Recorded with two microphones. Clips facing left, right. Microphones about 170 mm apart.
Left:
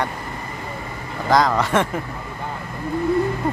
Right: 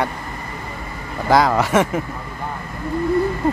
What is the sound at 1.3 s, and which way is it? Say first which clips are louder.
Speech: right 2 dB; 10° right (ahead or behind).